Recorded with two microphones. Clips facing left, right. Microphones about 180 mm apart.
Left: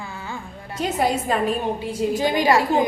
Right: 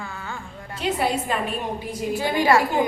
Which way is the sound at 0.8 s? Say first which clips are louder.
Left 2 dB; 45° left (ahead or behind).